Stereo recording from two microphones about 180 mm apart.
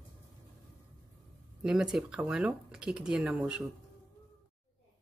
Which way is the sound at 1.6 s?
5° right (ahead or behind).